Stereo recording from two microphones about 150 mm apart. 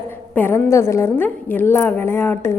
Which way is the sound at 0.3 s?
15° left (ahead or behind).